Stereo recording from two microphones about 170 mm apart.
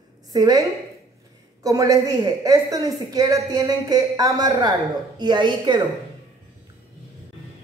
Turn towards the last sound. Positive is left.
turn(degrees=-25)  # may be behind; listen again after turning